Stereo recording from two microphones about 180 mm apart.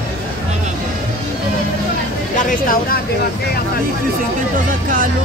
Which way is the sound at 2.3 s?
50° left (ahead or behind).